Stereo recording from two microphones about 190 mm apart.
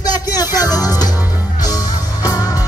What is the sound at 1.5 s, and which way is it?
Music, 20° left (ahead or behind).